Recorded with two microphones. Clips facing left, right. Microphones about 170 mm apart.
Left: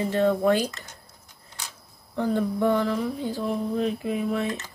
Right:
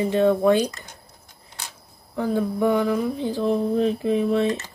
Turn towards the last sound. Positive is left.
turn(degrees=-30)  # may be behind; listen again after turning